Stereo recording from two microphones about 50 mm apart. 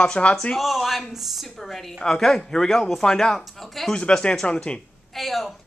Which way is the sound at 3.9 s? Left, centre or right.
Centre.